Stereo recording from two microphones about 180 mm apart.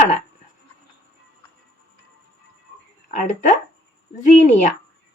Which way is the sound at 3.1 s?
40° left (ahead or behind).